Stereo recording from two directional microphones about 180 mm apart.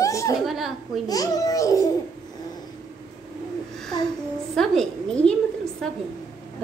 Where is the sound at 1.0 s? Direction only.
20° left (ahead or behind).